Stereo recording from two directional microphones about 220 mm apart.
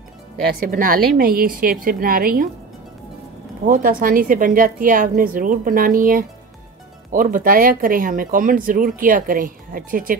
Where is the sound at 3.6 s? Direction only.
40° right (ahead or behind).